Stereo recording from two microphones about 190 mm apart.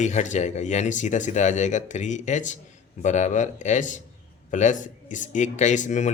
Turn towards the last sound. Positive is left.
turn(degrees=40)  # may be behind; listen again after turning